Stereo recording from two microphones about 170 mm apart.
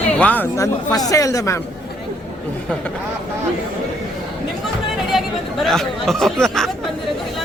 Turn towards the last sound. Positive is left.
turn(degrees=5)  # may be behind; listen again after turning